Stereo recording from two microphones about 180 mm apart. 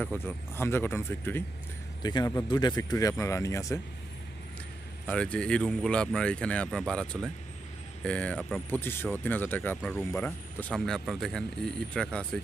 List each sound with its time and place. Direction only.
0.0 s speech: 10° left (ahead or behind)
5.0 s speech: 5° left (ahead or behind)